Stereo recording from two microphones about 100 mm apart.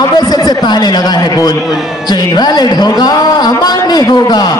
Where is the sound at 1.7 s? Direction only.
Centre (ahead or behind).